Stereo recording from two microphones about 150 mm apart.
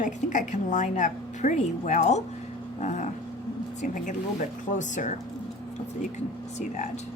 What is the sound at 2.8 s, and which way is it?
Dog, 50° left (ahead or behind).